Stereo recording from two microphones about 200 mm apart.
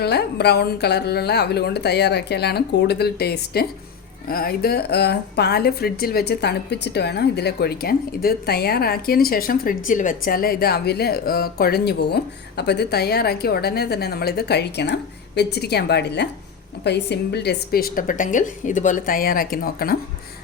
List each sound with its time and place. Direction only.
0.0 s a woman's voice: 55° left (ahead or behind)